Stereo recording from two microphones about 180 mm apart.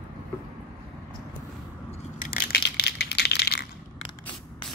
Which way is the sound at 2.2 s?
55° left (ahead or behind).